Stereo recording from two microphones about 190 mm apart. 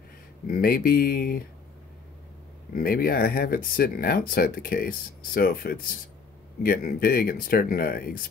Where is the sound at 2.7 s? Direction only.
50° left (ahead or behind).